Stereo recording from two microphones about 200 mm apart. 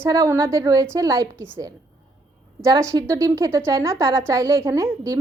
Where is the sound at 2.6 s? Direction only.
15° right (ahead or behind).